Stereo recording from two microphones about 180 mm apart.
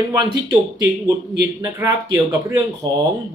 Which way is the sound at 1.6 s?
20° right (ahead or behind).